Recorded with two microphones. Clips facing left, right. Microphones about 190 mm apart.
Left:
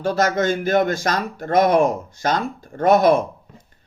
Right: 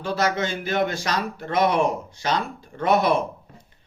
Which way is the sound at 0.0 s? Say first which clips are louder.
Left 5 dB; 45° left (ahead or behind).